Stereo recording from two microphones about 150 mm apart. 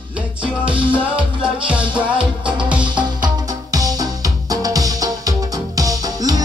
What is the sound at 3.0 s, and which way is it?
Music, 25° right (ahead or behind).